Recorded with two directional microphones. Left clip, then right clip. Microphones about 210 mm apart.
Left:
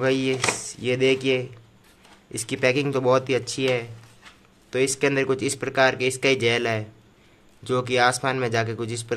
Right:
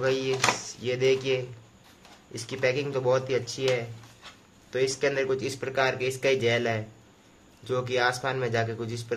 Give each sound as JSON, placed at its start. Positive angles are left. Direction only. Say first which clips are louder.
{"t": 0.0, "sound": "speech", "louder": "left 3 dB", "side_deg": 50}